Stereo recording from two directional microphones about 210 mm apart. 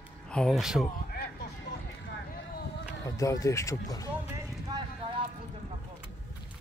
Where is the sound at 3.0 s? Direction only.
15° left (ahead or behind).